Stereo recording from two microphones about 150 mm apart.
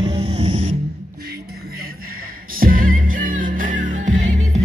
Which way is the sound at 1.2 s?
90° right.